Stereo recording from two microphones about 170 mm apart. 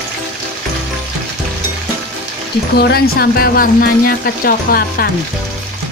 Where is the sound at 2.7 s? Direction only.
65° left (ahead or behind).